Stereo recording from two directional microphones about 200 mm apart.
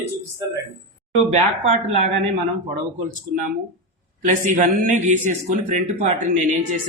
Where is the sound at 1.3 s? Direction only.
35° right (ahead or behind).